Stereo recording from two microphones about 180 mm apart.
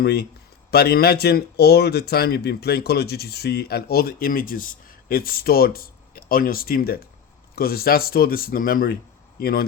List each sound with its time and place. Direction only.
0.0 s speech: 65° left (ahead or behind)